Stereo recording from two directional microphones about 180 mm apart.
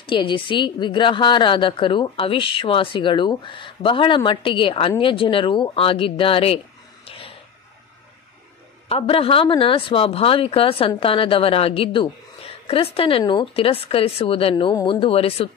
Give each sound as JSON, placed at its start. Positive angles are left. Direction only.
{"t": 0.0, "sound": "a woman's voice", "side_deg": 25}
{"t": 7.1, "sound": "a sound", "side_deg": 30}
{"t": 8.8, "sound": "speech", "side_deg": 30}